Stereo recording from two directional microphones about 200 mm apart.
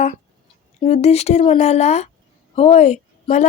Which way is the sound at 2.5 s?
30° left (ahead or behind).